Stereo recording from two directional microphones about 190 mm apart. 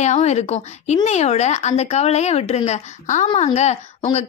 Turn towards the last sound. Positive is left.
turn(degrees=35)  # may be behind; listen again after turning